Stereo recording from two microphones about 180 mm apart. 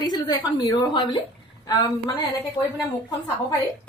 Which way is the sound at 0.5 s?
25° left (ahead or behind).